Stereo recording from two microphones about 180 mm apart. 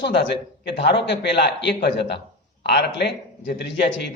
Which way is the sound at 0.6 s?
70° left (ahead or behind).